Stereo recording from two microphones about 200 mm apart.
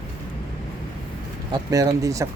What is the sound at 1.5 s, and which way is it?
Speech, 15° right (ahead or behind).